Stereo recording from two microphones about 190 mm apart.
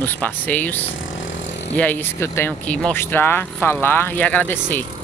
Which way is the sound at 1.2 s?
80° left.